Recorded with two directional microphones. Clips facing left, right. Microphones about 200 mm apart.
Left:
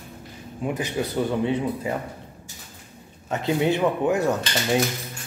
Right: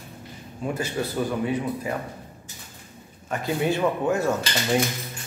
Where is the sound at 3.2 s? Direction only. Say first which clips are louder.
Left 2 dB; 20° left (ahead or behind).